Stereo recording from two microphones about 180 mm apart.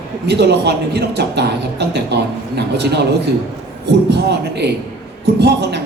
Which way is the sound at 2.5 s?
70° right (ahead or behind).